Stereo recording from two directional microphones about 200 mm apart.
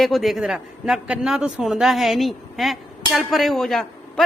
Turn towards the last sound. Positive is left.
turn(degrees=0)  # may be behind; listen again after turning